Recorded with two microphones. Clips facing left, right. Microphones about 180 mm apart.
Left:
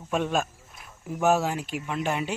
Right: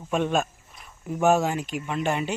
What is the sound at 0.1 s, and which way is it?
Speech, centre (ahead or behind).